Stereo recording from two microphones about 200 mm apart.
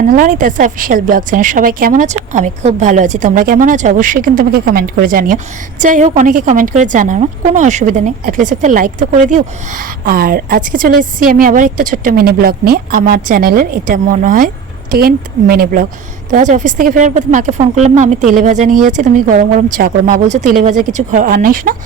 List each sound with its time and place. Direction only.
0.0 s a woman's voice: 40° right (ahead or behind)